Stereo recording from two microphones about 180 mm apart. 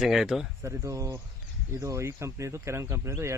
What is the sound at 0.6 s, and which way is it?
Speech, 15° right (ahead or behind).